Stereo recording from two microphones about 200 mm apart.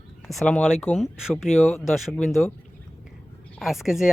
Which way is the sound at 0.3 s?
5° left (ahead or behind).